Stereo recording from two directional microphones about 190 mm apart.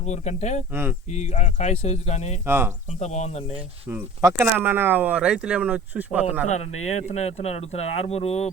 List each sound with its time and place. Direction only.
0.0 s speech: 35° left (ahead or behind)
0.7 s speech: 10° right (ahead or behind)
1.1 s speech: 35° left (ahead or behind)
3.8 s speech: 15° right (ahead or behind)
6.8 s speech: 35° left (ahead or behind)